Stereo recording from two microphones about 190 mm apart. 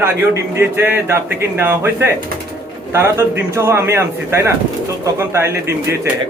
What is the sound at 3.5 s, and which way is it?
A man's voice, 15° right (ahead or behind).